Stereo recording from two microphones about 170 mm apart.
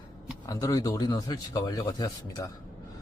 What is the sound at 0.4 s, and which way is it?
A man's voice, 20° left (ahead or behind).